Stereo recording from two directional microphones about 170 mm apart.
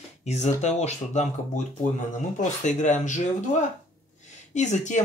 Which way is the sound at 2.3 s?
45° left (ahead or behind).